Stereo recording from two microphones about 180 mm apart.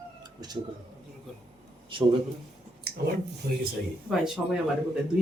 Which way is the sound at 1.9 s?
30° right (ahead or behind).